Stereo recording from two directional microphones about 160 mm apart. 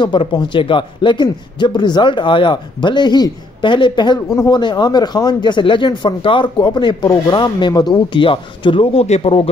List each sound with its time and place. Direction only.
0.0 s a man's voice: 30° left (ahead or behind)